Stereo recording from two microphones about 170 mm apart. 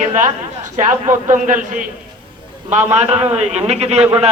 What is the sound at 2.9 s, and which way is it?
A man's voice, 40° right (ahead or behind).